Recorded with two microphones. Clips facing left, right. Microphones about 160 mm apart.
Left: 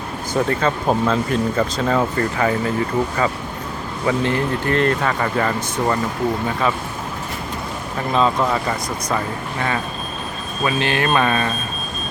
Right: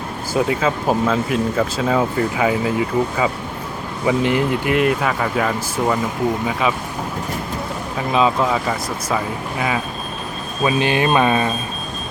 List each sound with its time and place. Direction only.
0.3 s speech: 10° right (ahead or behind)
7.9 s speech: 5° right (ahead or behind)